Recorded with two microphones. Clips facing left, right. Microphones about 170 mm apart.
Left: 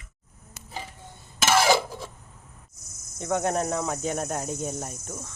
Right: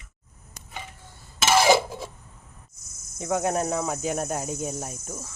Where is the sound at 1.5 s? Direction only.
20° right (ahead or behind).